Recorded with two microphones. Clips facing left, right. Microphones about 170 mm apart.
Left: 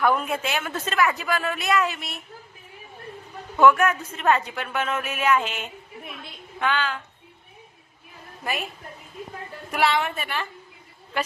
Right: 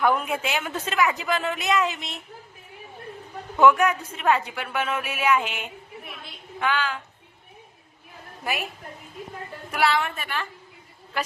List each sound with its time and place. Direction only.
0.0 s speech: 15° right (ahead or behind)
3.6 s speech: 15° right (ahead or behind)
8.4 s a woman's voice: centre (ahead or behind)
9.7 s a woman's voice: centre (ahead or behind)